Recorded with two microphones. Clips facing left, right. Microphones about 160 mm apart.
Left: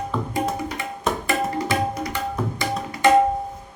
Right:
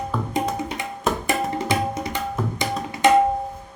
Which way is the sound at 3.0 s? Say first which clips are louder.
Even; 20° right (ahead or behind).